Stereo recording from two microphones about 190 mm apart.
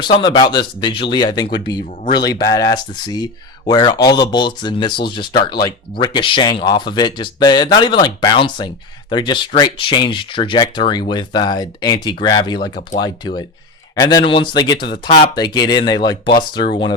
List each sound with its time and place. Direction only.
0.0 s speech: 25° left (ahead or behind)